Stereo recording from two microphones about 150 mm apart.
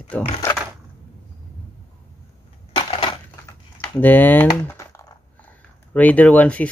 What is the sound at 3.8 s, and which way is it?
Speech, 10° left (ahead or behind).